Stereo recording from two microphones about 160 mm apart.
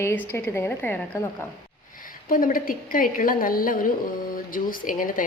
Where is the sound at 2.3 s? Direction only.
60° left (ahead or behind).